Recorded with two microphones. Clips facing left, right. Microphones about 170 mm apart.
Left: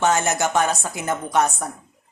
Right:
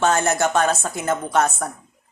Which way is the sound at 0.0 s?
20° left (ahead or behind).